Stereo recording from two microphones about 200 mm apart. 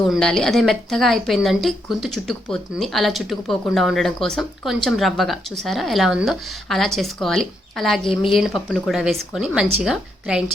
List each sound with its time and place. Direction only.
0.0 s speech: centre (ahead or behind)